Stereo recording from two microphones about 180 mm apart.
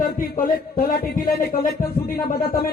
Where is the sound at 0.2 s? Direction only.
50° left (ahead or behind).